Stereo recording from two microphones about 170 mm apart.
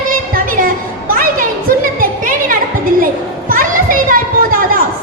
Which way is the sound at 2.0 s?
55° right (ahead or behind).